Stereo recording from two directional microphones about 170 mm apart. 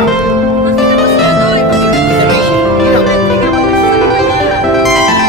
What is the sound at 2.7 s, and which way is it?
Music, centre (ahead or behind).